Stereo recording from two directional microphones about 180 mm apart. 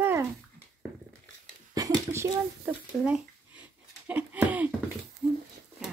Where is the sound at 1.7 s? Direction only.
20° right (ahead or behind).